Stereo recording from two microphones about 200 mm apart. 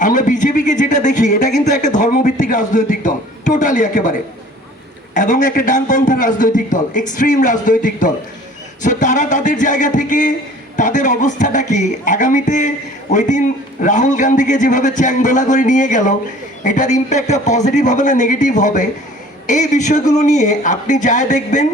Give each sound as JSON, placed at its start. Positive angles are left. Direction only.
{"t": 0.0, "sound": "speech", "side_deg": 40}
{"t": 5.1, "sound": "speech", "side_deg": 40}